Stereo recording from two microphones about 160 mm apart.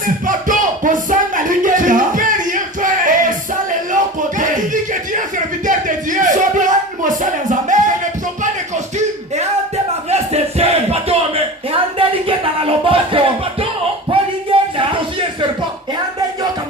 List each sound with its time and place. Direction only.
0.0 s music: 55° right (ahead or behind)
10.1 s music: 40° right (ahead or behind)
11.7 s a sound: 35° right (ahead or behind)
14.5 s music: 35° right (ahead or behind)